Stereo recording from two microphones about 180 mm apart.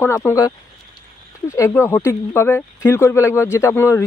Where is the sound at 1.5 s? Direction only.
15° left (ahead or behind).